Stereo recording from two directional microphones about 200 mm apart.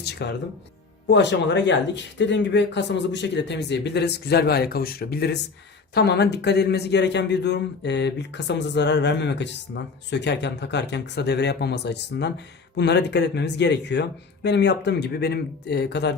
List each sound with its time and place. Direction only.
0.0 s speech: 55° left (ahead or behind)